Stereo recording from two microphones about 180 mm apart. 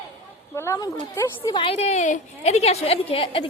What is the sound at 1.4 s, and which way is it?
A woman's voice, 30° left (ahead or behind).